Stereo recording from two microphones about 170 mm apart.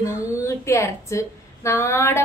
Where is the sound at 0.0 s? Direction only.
15° left (ahead or behind).